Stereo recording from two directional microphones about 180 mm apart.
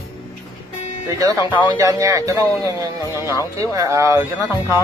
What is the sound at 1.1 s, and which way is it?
Speech, 20° right (ahead or behind).